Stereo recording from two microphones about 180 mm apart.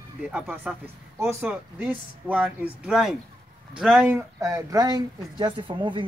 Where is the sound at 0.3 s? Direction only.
10° right (ahead or behind).